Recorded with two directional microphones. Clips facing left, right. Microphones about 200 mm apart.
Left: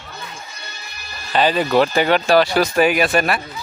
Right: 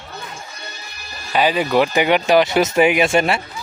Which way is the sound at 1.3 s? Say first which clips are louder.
Left 1 dB; 10° right (ahead or behind).